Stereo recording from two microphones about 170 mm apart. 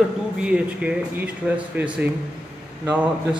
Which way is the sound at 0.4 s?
5° right (ahead or behind).